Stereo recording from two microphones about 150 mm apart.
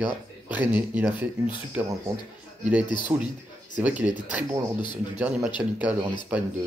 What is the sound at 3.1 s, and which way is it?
Speech, 25° right (ahead or behind).